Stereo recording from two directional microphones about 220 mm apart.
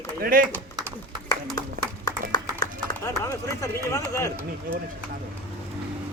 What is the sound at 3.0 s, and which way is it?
Speech, 15° left (ahead or behind).